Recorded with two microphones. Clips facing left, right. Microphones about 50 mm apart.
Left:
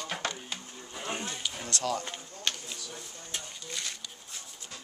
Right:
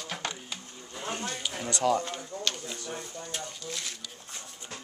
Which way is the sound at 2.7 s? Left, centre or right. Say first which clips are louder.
Right 6 dB; right.